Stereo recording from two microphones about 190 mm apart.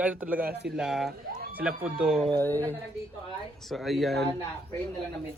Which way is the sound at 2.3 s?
10° left (ahead or behind).